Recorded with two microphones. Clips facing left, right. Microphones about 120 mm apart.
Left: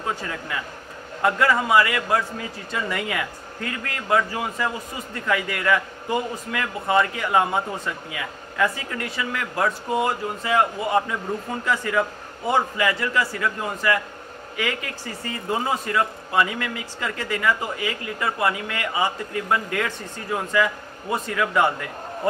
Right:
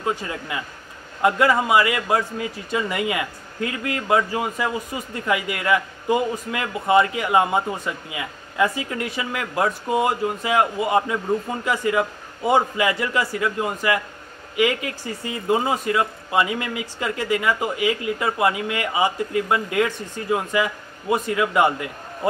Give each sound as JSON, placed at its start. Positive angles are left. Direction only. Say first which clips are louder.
{"t": 0.0, "sound": "speech", "louder": "right 3 dB", "side_deg": -15}